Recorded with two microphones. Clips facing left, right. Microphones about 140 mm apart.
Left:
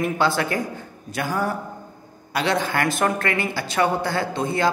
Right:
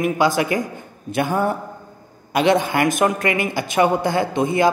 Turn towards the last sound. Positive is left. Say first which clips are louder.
# right 5 dB
turn(degrees=-20)  # may be behind; listen again after turning